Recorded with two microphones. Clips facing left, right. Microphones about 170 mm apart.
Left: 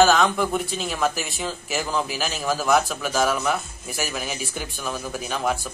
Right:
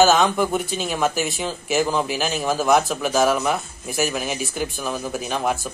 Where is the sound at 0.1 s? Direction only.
20° right (ahead or behind).